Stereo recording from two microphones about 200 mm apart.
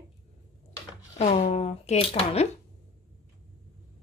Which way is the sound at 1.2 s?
30° left (ahead or behind).